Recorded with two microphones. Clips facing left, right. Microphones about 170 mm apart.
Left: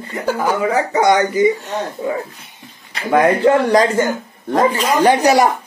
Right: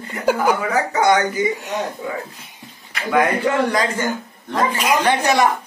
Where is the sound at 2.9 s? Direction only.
35° left (ahead or behind).